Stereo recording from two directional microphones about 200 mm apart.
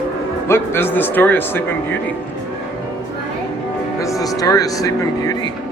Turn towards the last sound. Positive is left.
turn(degrees=15)  # may be behind; listen again after turning